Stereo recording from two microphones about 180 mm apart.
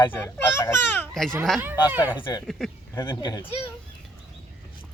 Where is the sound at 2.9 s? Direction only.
20° left (ahead or behind).